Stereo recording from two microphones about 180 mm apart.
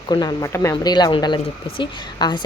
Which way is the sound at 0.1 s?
20° left (ahead or behind).